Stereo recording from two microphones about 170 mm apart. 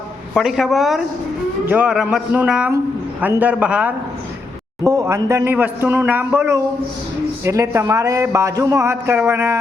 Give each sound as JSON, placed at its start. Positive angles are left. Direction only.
{"t": 0.3, "sound": "a man's voice", "side_deg": 0}
{"t": 4.8, "sound": "a man's voice", "side_deg": -20}